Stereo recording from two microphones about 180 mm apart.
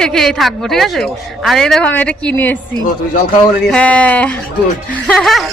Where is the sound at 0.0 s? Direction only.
Centre (ahead or behind).